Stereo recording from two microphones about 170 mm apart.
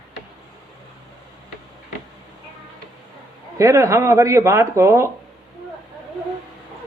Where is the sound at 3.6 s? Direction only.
20° right (ahead or behind).